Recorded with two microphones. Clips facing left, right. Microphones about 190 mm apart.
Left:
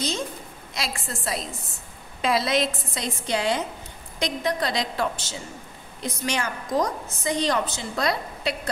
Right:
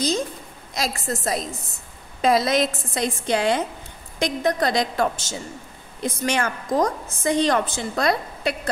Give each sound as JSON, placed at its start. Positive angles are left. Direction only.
{"t": 0.7, "sound": "a woman's voice", "side_deg": -45}